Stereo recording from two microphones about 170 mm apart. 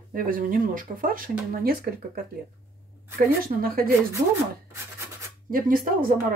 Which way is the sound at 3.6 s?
55° right (ahead or behind).